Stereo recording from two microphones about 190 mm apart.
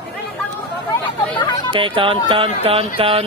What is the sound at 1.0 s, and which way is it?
Chatter, 25° left (ahead or behind).